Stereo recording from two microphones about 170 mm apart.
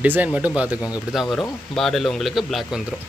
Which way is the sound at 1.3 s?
Centre (ahead or behind).